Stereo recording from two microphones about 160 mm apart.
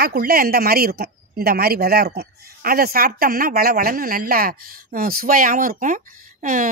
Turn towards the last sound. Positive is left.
turn(degrees=-55)  # may be behind; listen again after turning